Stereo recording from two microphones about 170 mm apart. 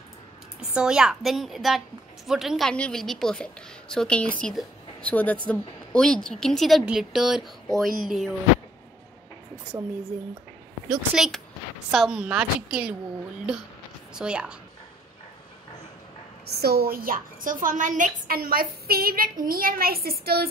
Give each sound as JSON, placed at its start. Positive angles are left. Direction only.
{"t": 0.7, "sound": "a woman's voice", "side_deg": -5}
{"t": 10.9, "sound": "a woman's voice", "side_deg": 0}
{"t": 14.1, "sound": "a woman's voice", "side_deg": -5}
{"t": 16.4, "sound": "a woman's voice", "side_deg": -70}